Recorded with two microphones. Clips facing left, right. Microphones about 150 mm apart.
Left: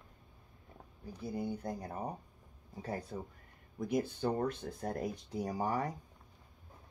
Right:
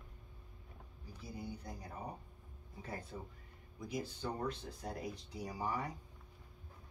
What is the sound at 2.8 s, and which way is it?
Speech, 35° left (ahead or behind).